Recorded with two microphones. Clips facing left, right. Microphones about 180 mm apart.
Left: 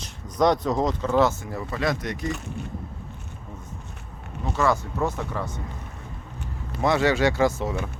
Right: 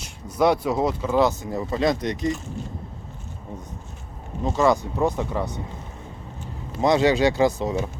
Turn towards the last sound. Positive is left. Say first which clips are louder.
# right 2 dB
turn(degrees=-15)  # may be behind; listen again after turning